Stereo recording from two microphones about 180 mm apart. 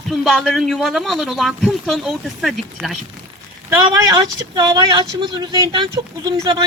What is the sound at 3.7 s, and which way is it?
Speech, 20° right (ahead or behind).